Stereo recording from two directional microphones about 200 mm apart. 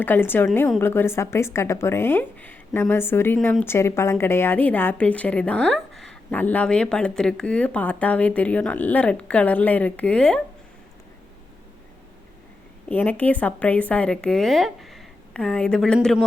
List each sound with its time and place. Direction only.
0.0 s speech: 10° left (ahead or behind)
12.9 s a woman's voice: 10° left (ahead or behind)